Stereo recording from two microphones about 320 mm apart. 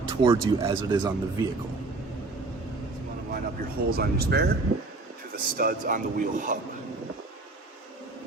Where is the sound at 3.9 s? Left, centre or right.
Right.